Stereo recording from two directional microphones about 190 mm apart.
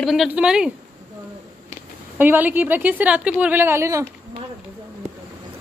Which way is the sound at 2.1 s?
10° right (ahead or behind).